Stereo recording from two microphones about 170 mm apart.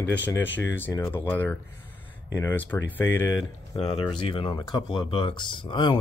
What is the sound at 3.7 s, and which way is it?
Speech, 35° left (ahead or behind).